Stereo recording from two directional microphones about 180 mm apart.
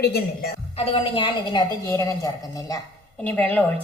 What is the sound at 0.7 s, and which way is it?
Speech, 35° left (ahead or behind).